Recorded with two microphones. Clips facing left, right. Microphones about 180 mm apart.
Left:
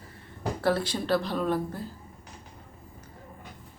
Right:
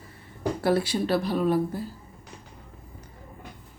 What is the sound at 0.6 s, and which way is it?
A woman's voice, 10° right (ahead or behind).